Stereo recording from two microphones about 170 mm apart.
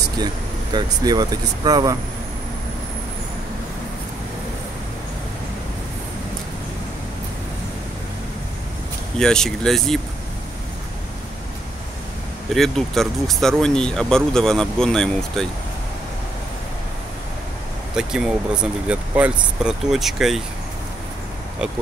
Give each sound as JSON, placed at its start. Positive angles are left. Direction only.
{"t": 1.0, "sound": "speech", "side_deg": -25}
{"t": 9.2, "sound": "speech", "side_deg": 5}
{"t": 12.5, "sound": "speech", "side_deg": 0}
{"t": 17.9, "sound": "speech", "side_deg": -5}